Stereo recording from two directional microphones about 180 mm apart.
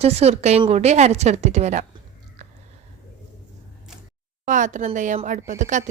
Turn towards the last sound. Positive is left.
turn(degrees=-45)  # may be behind; listen again after turning